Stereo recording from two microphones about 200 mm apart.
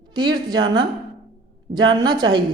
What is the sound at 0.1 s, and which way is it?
Speech, 20° right (ahead or behind).